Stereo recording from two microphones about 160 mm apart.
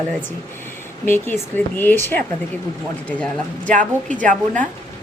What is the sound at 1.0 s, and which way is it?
Speech, 15° left (ahead or behind).